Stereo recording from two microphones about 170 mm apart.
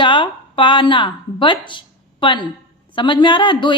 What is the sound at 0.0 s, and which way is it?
A woman's voice, 30° left (ahead or behind).